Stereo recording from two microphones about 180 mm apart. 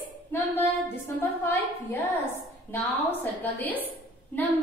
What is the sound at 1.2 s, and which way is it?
Speech, 10° left (ahead or behind).